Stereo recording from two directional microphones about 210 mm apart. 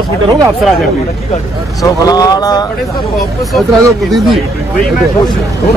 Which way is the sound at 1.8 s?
15° left (ahead or behind).